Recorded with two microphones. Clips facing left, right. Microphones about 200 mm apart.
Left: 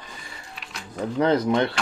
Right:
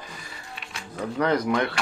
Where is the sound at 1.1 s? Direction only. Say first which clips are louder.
Left 3 dB; 25° left (ahead or behind).